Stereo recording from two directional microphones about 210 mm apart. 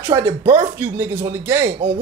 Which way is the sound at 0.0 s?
10° right (ahead or behind).